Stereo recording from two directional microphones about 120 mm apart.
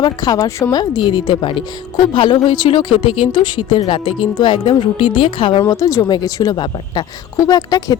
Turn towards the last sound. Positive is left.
turn(degrees=30)  # may be behind; listen again after turning